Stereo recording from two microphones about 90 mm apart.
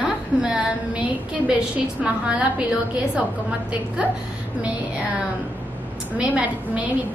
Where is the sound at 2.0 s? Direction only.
10° right (ahead or behind).